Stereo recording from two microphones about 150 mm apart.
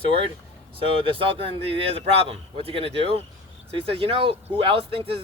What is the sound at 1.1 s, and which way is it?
Speech, 35° right (ahead or behind).